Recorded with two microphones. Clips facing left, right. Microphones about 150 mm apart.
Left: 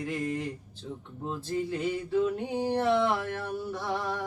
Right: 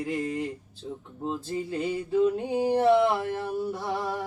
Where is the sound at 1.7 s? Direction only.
15° right (ahead or behind).